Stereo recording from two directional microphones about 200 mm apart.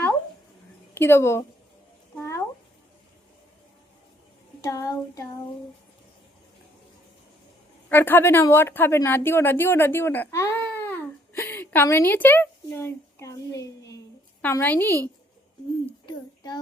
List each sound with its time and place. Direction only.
0.9 s child singing: 10° left (ahead or behind)
2.1 s cat: 15° left (ahead or behind)
4.6 s child singing: 15° left (ahead or behind)
7.9 s a woman's voice: 10° left (ahead or behind)
14.4 s child singing: 10° left (ahead or behind)
16.0 s child singing: 20° left (ahead or behind)